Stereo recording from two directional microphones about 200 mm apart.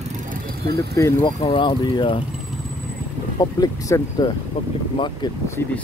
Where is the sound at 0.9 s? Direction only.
15° left (ahead or behind).